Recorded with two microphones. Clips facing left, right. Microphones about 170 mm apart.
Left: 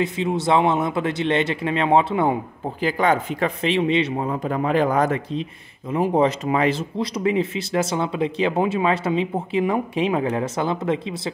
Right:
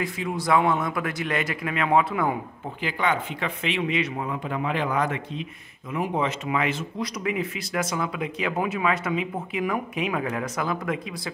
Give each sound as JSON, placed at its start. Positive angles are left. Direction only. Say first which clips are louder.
{"t": 0.0, "sound": "speech", "louder": "left 6 dB", "side_deg": 25}
{"t": 2.8, "sound": "speech", "louder": "left 6 dB", "side_deg": 40}